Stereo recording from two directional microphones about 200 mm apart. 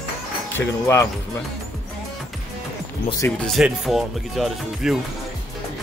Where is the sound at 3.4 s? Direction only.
Centre (ahead or behind).